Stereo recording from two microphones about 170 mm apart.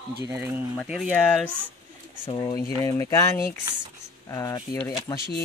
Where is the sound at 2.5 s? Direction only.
20° left (ahead or behind).